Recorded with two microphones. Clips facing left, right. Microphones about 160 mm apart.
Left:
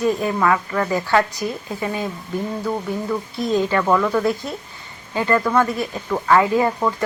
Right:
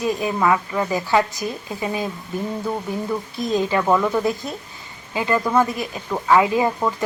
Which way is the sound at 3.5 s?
20° right (ahead or behind).